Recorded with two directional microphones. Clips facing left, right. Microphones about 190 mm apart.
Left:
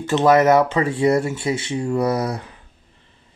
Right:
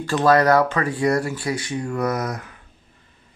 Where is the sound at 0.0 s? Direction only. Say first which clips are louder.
Left 2 dB; 20° left (ahead or behind).